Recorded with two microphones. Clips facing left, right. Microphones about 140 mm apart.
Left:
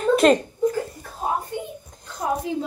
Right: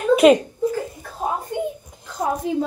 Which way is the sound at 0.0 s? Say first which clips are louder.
Right 3 dB; 5° right (ahead or behind).